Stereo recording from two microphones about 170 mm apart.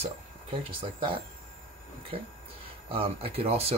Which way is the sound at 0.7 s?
30° right (ahead or behind).